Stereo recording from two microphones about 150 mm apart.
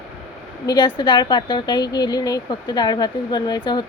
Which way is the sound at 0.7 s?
35° left (ahead or behind).